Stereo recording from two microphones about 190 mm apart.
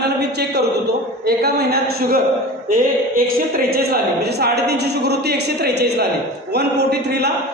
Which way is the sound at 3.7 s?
55° right (ahead or behind).